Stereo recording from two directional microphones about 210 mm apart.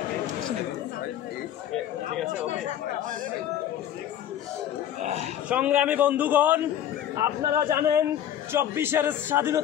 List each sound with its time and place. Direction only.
5.0 s speech: 30° right (ahead or behind)
5.5 s a man's voice: 5° right (ahead or behind)